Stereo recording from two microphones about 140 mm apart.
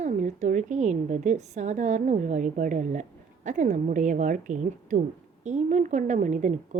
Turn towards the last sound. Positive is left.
turn(degrees=-60)  # may be behind; listen again after turning